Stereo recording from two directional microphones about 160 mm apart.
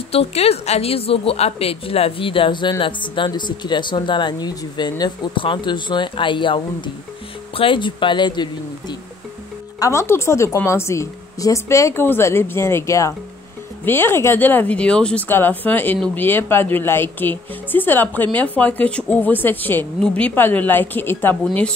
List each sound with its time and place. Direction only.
0.1 s a woman's voice: 40° left (ahead or behind)
9.8 s speech: 20° left (ahead or behind)